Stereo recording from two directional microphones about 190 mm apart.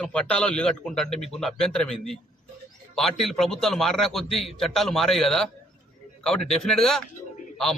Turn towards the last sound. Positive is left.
turn(degrees=0)  # may be behind; listen again after turning